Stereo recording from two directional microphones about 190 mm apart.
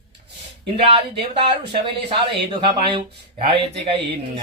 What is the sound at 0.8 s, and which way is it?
Speech, 30° right (ahead or behind).